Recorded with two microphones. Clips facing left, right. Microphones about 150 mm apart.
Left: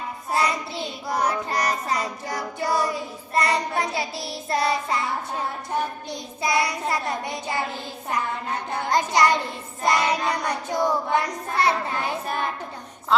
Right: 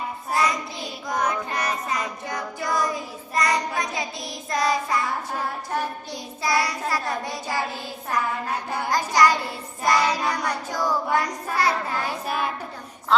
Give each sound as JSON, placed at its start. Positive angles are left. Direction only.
{"t": 0.3, "sound": "child singing", "side_deg": 30}
{"t": 6.1, "sound": "child singing", "side_deg": 20}
{"t": 8.9, "sound": "child singing", "side_deg": 25}